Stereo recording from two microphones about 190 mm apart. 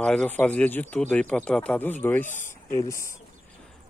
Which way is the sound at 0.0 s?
5° left (ahead or behind).